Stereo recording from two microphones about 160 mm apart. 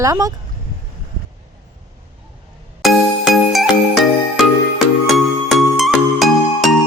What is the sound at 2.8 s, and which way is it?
Music, centre (ahead or behind).